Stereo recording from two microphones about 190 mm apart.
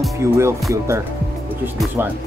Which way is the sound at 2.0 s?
10° right (ahead or behind).